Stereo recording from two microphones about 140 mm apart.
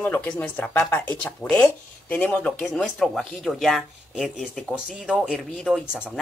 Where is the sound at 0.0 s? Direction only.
15° left (ahead or behind).